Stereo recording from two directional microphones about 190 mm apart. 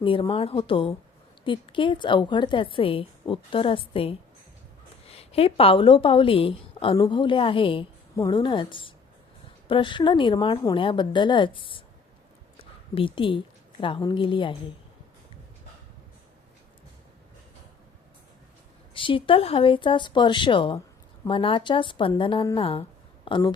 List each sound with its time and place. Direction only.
0.0 s a woman's voice: 25° left (ahead or behind)
18.9 s a woman's voice: 25° left (ahead or behind)